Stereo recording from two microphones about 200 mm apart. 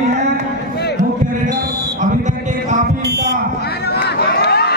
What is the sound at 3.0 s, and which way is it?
Buzzer, 55° right (ahead or behind).